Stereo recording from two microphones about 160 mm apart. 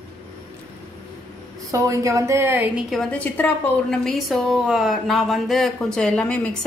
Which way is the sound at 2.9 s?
Centre (ahead or behind).